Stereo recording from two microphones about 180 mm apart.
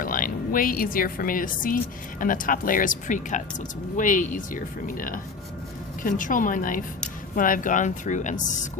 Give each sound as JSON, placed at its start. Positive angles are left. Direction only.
{"t": 0.0, "sound": "speech", "side_deg": 50}